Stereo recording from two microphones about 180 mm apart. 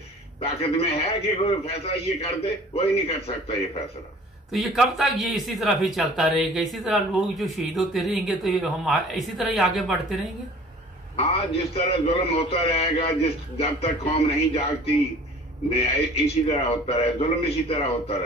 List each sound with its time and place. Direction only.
0.4 s a man's voice: 35° left (ahead or behind)
4.5 s speech: centre (ahead or behind)
11.1 s a man's voice: 35° left (ahead or behind)
15.7 s a man's voice: 35° left (ahead or behind)